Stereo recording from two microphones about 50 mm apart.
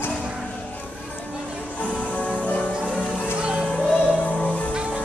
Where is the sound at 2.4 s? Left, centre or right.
Left.